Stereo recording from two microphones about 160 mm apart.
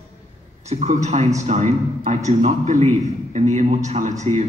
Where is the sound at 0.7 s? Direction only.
45° right (ahead or behind).